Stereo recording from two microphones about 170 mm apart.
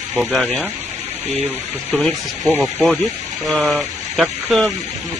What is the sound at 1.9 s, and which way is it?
Speech, centre (ahead or behind).